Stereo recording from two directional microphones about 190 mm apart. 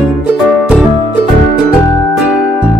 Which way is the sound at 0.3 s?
5° right (ahead or behind).